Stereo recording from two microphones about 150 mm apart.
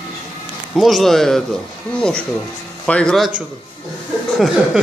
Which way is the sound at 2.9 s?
5° left (ahead or behind).